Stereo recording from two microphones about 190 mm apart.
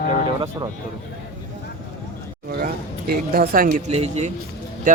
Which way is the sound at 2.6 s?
55° right (ahead or behind).